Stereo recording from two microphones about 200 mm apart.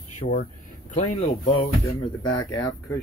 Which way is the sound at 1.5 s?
30° left (ahead or behind).